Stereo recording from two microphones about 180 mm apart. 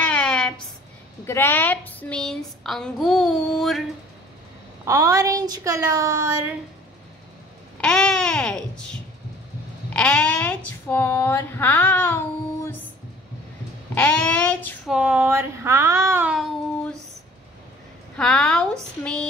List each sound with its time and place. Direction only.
0.0 s a sound: 5° left (ahead or behind)
1.2 s a woman's voice: 15° left (ahead or behind)
4.8 s a woman's voice: 15° right (ahead or behind)
7.7 s babbling: 5° left (ahead or behind)
9.9 s a sound: 5° left (ahead or behind)
13.9 s speech: 5° left (ahead or behind)
14.9 s a woman's voice: 5° right (ahead or behind)
18.1 s a woman's voice: 5° left (ahead or behind)